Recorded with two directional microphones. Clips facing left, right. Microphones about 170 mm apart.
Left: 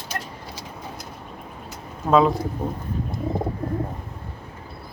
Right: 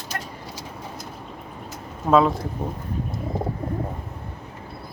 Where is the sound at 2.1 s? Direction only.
Centre (ahead or behind).